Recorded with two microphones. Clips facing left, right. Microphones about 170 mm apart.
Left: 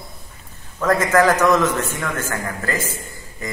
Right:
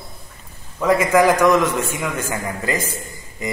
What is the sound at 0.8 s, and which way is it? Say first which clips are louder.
A man's voice: right 1 dB; 10° right (ahead or behind).